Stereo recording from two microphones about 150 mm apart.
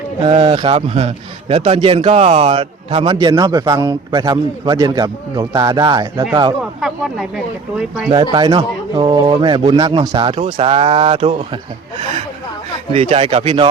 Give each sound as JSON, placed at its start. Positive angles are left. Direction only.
{"t": 0.4, "sound": "a man's voice", "side_deg": -30}
{"t": 2.5, "sound": "a man's voice", "side_deg": -35}
{"t": 6.8, "sound": "speech", "side_deg": -5}
{"t": 8.1, "sound": "a man's voice", "side_deg": -30}
{"t": 10.3, "sound": "speech", "side_deg": -40}